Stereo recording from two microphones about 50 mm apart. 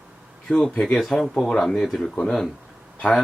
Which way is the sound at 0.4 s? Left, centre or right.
Centre.